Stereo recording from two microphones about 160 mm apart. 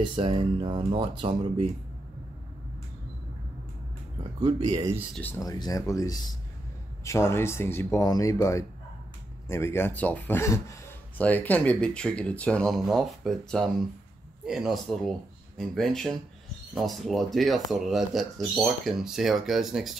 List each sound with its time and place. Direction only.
0.1 s speech: 30° right (ahead or behind)
4.6 s speech: 20° right (ahead or behind)
5.1 s speech: 10° left (ahead or behind)
5.4 s speech: 25° left (ahead or behind); by 20.0 s centre (ahead or behind)